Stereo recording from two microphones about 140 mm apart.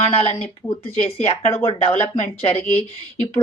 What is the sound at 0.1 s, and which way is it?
Speech, 45° left (ahead or behind).